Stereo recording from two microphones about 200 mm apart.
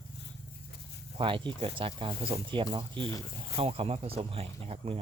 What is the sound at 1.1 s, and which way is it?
Speech, 25° right (ahead or behind).